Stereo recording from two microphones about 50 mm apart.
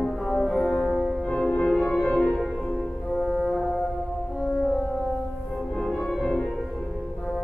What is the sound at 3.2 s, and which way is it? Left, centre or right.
Music, centre.